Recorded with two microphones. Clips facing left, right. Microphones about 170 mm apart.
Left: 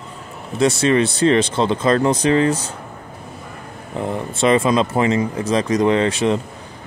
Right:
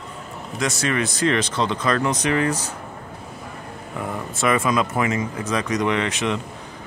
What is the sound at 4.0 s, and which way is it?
Speech, 25° left (ahead or behind).